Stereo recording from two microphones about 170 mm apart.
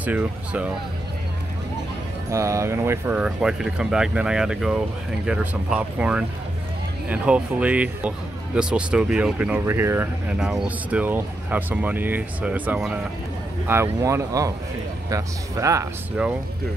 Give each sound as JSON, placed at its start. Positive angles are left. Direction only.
{"t": 0.0, "sound": "speech", "side_deg": -5}
{"t": 2.3, "sound": "speech", "side_deg": -15}